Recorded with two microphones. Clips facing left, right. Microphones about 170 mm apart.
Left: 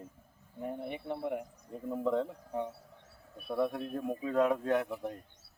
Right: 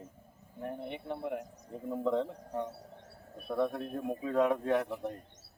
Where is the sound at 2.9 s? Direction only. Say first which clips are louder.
Right 4 dB; 40° right (ahead or behind).